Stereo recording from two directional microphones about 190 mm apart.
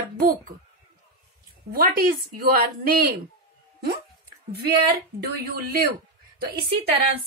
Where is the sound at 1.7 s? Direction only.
50° right (ahead or behind).